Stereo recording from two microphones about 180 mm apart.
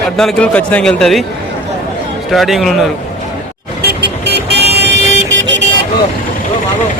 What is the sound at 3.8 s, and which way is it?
Vehicle, 60° right (ahead or behind).